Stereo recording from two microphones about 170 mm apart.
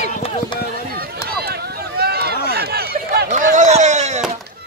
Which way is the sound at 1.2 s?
70° right (ahead or behind).